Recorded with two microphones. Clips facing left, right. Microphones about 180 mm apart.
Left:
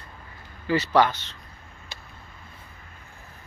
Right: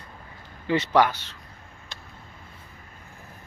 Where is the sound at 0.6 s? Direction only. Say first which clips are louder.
Even; 20° right (ahead or behind).